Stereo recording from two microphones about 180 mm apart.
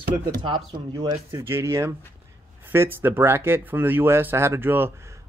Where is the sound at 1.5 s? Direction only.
15° right (ahead or behind).